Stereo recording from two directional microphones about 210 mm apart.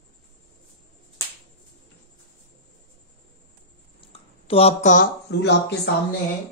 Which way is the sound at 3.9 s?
25° left (ahead or behind).